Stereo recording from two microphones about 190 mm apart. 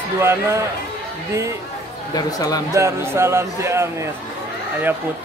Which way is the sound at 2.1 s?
20° left (ahead or behind).